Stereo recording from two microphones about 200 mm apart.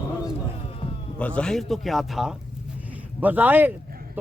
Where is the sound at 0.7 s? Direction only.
30° left (ahead or behind).